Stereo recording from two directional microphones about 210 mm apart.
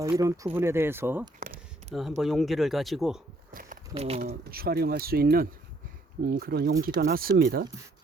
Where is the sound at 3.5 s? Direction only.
40° right (ahead or behind).